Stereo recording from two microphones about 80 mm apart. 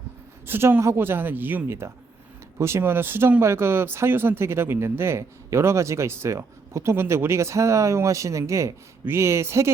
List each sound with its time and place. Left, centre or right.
0.4 s a man's voice: right